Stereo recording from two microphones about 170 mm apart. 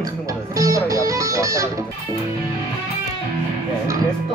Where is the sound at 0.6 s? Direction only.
20° right (ahead or behind).